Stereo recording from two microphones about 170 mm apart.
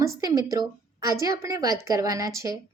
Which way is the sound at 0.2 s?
20° right (ahead or behind).